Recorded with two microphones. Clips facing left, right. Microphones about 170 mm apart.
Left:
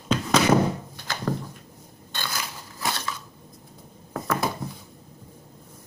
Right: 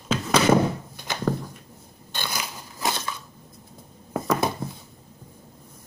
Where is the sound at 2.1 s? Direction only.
15° right (ahead or behind).